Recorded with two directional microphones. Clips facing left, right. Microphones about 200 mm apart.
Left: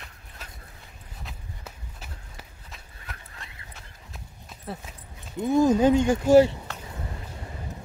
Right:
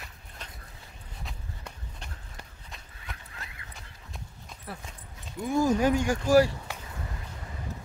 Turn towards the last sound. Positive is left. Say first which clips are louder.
# left 5 dB
turn(degrees=25)  # may be behind; listen again after turning